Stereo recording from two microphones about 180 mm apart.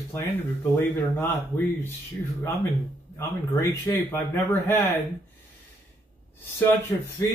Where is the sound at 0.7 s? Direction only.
10° left (ahead or behind).